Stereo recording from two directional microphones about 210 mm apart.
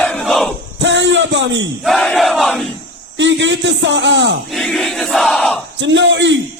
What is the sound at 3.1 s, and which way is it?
A man's voice, 60° right (ahead or behind).